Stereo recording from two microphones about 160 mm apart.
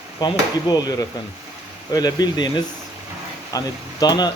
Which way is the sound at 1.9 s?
25° left (ahead or behind).